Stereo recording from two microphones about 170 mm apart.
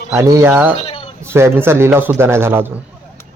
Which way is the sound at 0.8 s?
35° left (ahead or behind).